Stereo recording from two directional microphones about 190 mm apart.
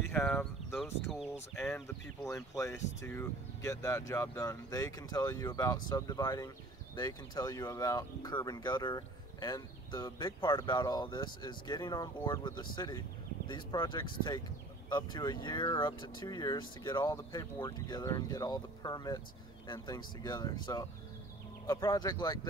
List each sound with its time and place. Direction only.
0.1 s speech: 10° left (ahead or behind)